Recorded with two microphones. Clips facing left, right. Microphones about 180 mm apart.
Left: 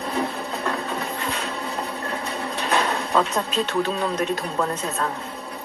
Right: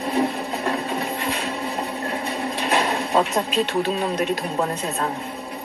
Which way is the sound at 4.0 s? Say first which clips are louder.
Right 1 dB; 15° right (ahead or behind).